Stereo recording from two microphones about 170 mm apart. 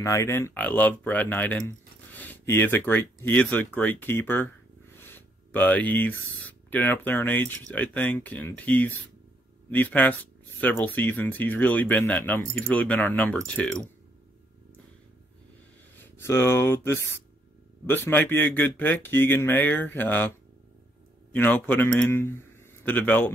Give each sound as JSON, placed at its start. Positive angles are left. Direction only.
{"t": 0.0, "sound": "speech", "side_deg": 15}
{"t": 16.0, "sound": "a man's voice", "side_deg": 15}